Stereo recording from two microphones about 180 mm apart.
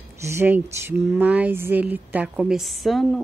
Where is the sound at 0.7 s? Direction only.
10° right (ahead or behind).